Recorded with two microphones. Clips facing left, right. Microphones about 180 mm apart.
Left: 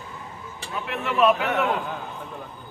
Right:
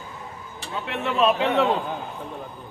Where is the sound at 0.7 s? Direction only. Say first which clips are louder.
Right 1 dB; 25° right (ahead or behind).